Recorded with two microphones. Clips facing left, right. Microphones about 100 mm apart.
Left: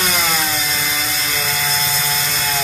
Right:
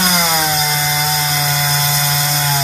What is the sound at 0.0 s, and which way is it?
Chainsaw, 20° right (ahead or behind).